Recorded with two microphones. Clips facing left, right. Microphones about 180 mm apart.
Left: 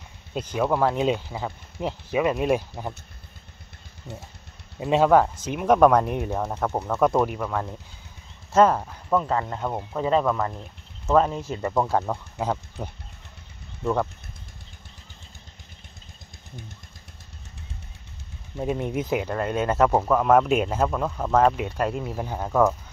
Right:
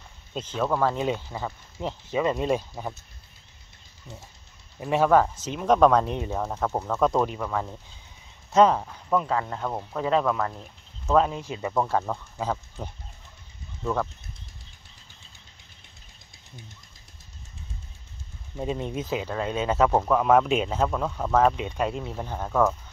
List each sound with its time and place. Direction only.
0.3 s speech: 10° left (ahead or behind)
4.7 s speech: 20° left (ahead or behind); by 11.7 s 5° right (ahead or behind)
11.7 s speech: 10° left (ahead or behind)
18.6 s speech: 10° left (ahead or behind)